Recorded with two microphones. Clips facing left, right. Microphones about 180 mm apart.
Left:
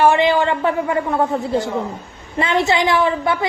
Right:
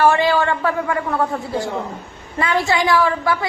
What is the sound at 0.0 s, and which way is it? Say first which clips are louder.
A woman's voice: left 1 dB; 20° left (ahead or behind).